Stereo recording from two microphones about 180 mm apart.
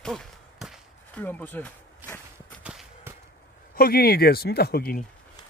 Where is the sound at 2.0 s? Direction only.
10° right (ahead or behind).